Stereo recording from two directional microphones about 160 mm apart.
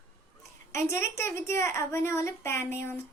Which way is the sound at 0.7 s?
15° left (ahead or behind).